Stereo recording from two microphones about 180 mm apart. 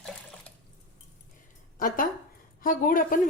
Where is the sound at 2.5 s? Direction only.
50° left (ahead or behind).